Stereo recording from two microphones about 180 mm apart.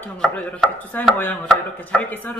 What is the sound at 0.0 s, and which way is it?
Speech, 10° left (ahead or behind).